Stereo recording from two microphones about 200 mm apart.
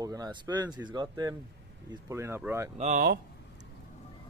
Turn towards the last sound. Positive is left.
turn(degrees=-45)  # may be behind; listen again after turning